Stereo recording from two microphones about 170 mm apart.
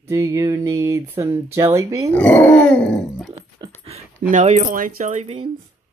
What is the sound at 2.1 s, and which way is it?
Dog, 10° left (ahead or behind).